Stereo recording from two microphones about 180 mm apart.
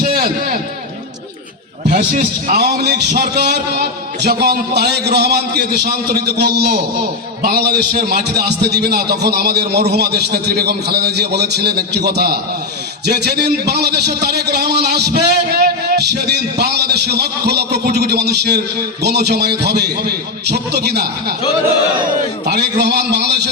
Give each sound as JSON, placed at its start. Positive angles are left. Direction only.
{"t": 0.0, "sound": "a sound", "side_deg": -55}
{"t": 1.9, "sound": "a man's voice", "side_deg": -60}
{"t": 22.4, "sound": "a man's voice", "side_deg": -70}